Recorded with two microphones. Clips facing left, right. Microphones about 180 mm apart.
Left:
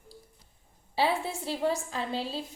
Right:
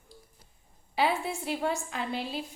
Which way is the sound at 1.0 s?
35° left (ahead or behind).